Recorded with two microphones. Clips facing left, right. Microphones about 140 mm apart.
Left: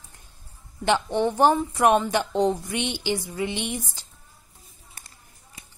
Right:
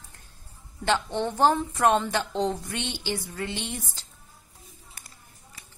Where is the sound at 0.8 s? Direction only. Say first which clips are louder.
Left 4 dB; 15° left (ahead or behind).